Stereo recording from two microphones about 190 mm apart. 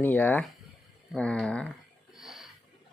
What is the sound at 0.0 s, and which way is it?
Speech, 10° left (ahead or behind).